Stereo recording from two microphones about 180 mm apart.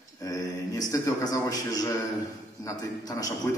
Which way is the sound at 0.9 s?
20° left (ahead or behind).